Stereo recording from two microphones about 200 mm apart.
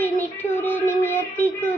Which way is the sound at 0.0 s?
10° left (ahead or behind).